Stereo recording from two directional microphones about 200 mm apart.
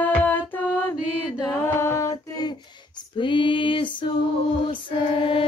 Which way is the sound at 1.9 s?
15° left (ahead or behind).